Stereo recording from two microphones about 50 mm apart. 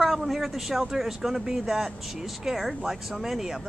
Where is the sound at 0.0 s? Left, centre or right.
Centre.